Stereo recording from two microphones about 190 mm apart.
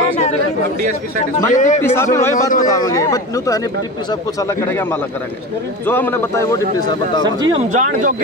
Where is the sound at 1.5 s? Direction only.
40° left (ahead or behind).